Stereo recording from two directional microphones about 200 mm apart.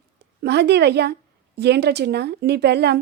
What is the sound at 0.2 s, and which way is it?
A woman's voice, 55° right (ahead or behind).